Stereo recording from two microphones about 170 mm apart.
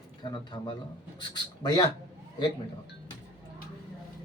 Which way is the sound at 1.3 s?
25° left (ahead or behind).